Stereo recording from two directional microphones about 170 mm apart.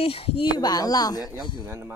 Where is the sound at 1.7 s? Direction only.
15° right (ahead or behind).